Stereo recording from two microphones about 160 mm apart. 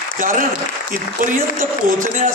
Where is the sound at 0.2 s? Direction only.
55° right (ahead or behind).